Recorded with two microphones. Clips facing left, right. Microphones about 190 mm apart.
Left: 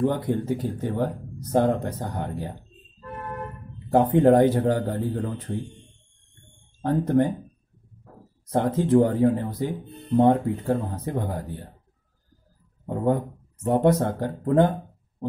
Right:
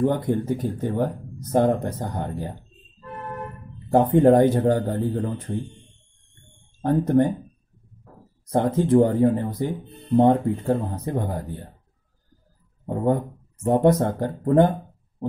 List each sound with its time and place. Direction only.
0.0 s speech: 15° right (ahead or behind)
0.5 s speech: 10° left (ahead or behind)
0.8 s speech: 15° right (ahead or behind)
4.2 s speech: 15° right (ahead or behind)
6.8 s speech: 15° right (ahead or behind)
8.5 s speech: 15° right (ahead or behind)
12.8 s speech: 15° right (ahead or behind)